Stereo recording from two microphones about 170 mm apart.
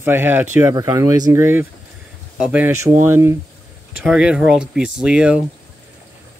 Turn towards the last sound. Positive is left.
turn(degrees=-5)  # may be behind; listen again after turning